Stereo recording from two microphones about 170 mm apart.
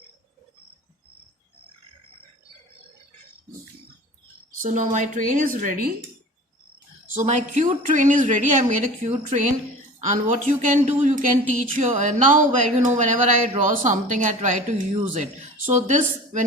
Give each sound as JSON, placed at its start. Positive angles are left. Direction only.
{"t": 4.6, "sound": "a woman's voice", "side_deg": -50}
{"t": 7.2, "sound": "a woman's voice", "side_deg": -45}